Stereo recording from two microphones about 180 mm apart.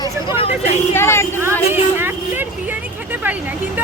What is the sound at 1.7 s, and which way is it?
Speech, 10° right (ahead or behind).